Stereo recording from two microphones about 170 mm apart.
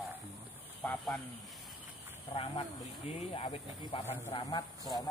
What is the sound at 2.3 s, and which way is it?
Speech, 30° left (ahead or behind).